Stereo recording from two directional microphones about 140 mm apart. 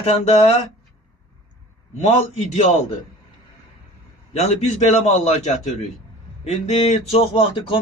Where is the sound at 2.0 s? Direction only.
55° left (ahead or behind).